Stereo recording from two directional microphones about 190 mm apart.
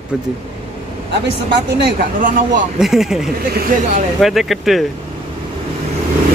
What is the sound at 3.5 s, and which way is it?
Speech, 50° right (ahead or behind).